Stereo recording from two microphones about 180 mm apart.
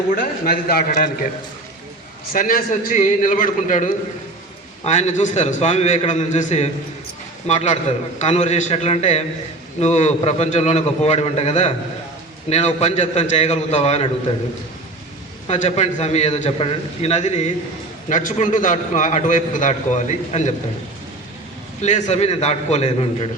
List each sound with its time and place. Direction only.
0.2 s a man's voice: 55° left (ahead or behind)
2.3 s a man's voice: 50° left (ahead or behind); by 14.1 s 35° left (ahead or behind)
15.4 s a man's voice: 40° left (ahead or behind)
21.8 s a man's voice: 40° left (ahead or behind)